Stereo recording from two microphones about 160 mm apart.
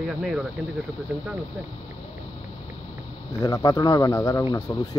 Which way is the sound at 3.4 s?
20° left (ahead or behind).